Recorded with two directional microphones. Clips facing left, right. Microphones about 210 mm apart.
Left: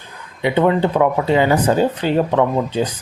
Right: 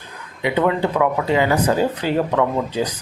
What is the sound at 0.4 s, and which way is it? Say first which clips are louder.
Speech: left 3 dB; 25° left (ahead or behind).